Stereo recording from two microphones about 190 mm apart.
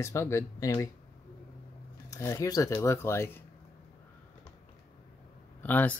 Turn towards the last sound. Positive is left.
turn(degrees=10)  # may be behind; listen again after turning